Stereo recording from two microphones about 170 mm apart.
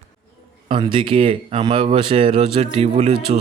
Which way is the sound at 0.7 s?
30° right (ahead or behind).